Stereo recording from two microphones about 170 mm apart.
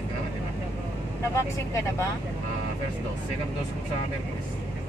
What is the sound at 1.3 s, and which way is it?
Speech, 15° left (ahead or behind).